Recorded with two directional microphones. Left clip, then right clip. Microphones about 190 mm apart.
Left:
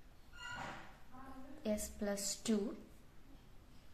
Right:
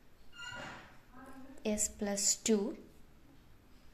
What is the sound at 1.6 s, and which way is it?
A woman's voice, 15° right (ahead or behind).